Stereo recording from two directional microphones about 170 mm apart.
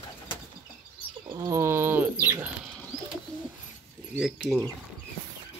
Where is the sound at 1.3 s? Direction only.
20° right (ahead or behind).